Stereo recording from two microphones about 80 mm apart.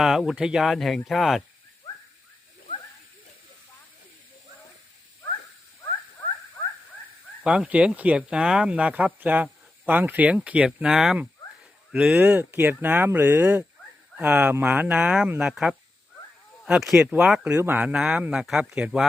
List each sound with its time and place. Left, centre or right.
0.0 s speech: centre
7.4 s speech: centre
12.2 s speech: right
17.7 s speech: centre